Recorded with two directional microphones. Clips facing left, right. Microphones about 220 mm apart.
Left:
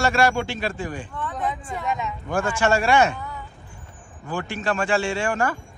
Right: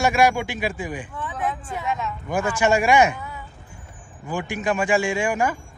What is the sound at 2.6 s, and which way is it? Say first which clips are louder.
Speech: right 2 dB; 15° right (ahead or behind).